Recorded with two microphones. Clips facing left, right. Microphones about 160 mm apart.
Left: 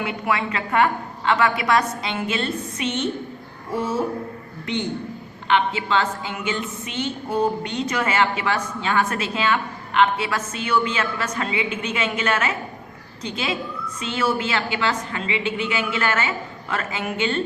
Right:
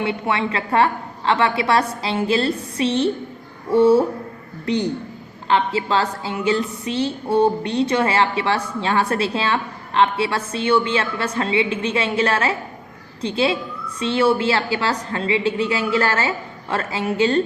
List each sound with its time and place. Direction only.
0.0 s a woman's voice: 30° right (ahead or behind)